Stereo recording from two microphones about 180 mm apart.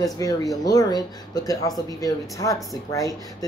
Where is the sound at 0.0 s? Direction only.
20° left (ahead or behind).